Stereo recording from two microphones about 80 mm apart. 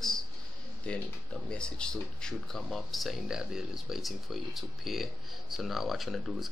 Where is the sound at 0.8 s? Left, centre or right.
Centre.